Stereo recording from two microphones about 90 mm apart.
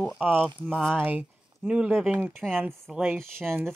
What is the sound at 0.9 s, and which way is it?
Speech, 20° right (ahead or behind).